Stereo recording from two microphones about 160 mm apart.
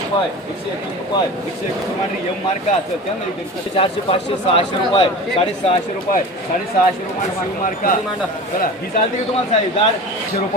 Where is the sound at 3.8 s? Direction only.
35° left (ahead or behind).